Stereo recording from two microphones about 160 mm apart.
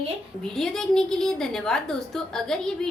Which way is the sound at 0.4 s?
5° left (ahead or behind).